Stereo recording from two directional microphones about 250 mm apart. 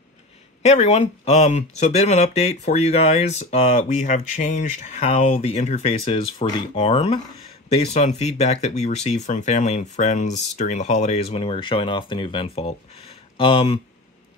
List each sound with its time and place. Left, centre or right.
0.6 s speech: left